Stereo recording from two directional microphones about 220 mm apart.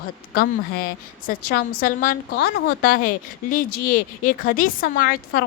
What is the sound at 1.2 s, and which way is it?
A woman's voice, 40° left (ahead or behind).